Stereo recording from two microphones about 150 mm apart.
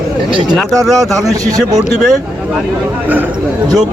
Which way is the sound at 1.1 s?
25° right (ahead or behind).